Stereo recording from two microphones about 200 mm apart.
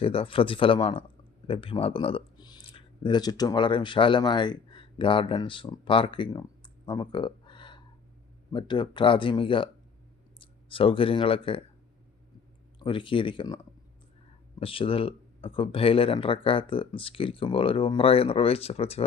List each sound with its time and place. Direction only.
0.0 s speech: 30° left (ahead or behind)
6.8 s a sound: 25° left (ahead or behind)
8.5 s speech: 25° left (ahead or behind)
12.8 s speech: 25° left (ahead or behind)
14.6 s speech: 25° left (ahead or behind)